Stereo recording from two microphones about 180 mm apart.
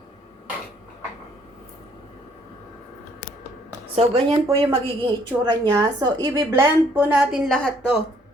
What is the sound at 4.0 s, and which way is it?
Speech, 30° right (ahead or behind).